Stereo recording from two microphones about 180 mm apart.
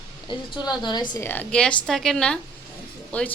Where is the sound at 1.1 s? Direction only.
10° left (ahead or behind).